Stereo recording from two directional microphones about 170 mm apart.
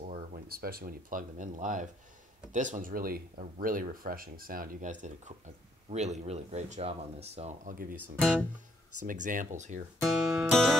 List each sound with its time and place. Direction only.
0.0 s speech: 50° right (ahead or behind)
8.2 s music: centre (ahead or behind)
9.0 s speech: 50° right (ahead or behind)
10.0 s music: centre (ahead or behind)